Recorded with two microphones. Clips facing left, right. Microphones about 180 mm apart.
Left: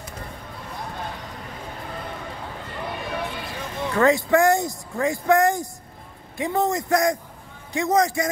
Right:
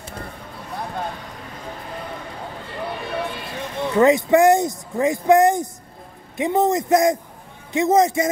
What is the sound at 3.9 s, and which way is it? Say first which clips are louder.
Speech: right 4 dB; 20° right (ahead or behind).